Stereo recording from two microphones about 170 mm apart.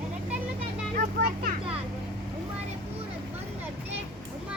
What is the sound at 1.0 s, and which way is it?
Speech, 60° right (ahead or behind).